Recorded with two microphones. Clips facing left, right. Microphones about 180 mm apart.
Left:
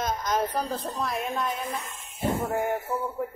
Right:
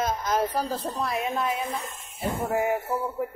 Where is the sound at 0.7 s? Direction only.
30° right (ahead or behind).